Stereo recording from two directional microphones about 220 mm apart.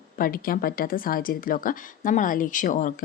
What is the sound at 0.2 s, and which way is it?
A woman's voice, 40° left (ahead or behind).